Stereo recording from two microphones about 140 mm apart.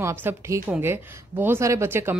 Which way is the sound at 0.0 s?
20° right (ahead or behind).